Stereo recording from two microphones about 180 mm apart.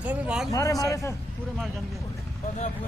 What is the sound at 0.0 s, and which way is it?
Speech, 5° right (ahead or behind).